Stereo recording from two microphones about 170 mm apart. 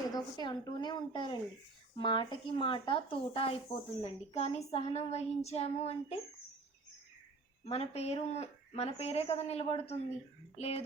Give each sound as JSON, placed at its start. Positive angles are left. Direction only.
{"t": 0.1, "sound": "speech", "side_deg": 25}
{"t": 7.6, "sound": "speech", "side_deg": 40}